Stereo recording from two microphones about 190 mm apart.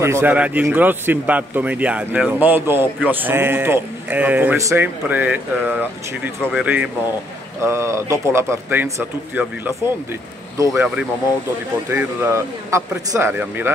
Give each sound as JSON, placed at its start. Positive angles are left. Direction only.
{"t": 0.0, "sound": "a man's voice", "side_deg": -10}
{"t": 11.9, "sound": "a man's voice", "side_deg": -10}